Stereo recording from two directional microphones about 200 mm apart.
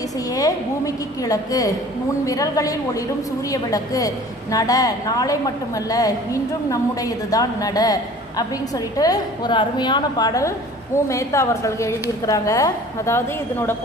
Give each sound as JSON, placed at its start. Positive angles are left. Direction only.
{"t": 0.3, "sound": "a woman's voice", "side_deg": 15}